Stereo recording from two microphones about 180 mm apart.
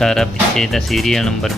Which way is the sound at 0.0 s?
Centre (ahead or behind).